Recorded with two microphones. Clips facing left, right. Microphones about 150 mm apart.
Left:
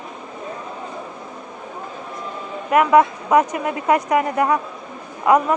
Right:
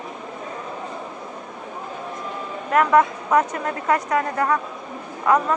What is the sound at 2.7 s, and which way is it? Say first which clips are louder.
A man's voice: left 3 dB; 10° left (ahead or behind).